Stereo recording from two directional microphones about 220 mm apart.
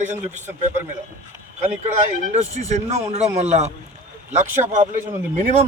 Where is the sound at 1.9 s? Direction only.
30° right (ahead or behind).